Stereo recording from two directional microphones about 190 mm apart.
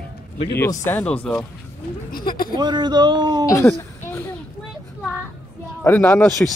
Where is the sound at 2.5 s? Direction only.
25° right (ahead or behind).